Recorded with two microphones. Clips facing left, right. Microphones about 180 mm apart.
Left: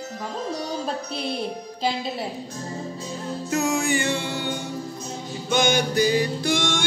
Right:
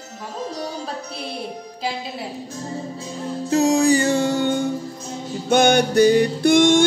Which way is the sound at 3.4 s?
35° right (ahead or behind).